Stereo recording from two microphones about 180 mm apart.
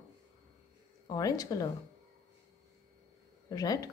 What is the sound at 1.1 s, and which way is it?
Speech, 20° left (ahead or behind).